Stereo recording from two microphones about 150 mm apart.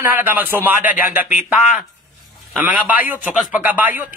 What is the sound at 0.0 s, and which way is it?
A man's voice, 15° right (ahead or behind).